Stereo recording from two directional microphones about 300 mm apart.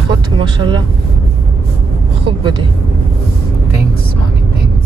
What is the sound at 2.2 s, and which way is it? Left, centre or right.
Speech, centre.